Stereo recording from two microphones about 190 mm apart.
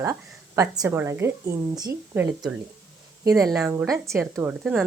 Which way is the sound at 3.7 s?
10° right (ahead or behind).